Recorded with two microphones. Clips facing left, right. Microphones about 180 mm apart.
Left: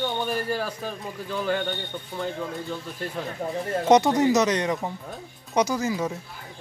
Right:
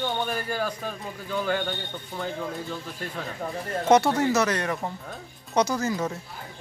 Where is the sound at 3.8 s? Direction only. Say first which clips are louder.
Left 2 dB; 15° left (ahead or behind).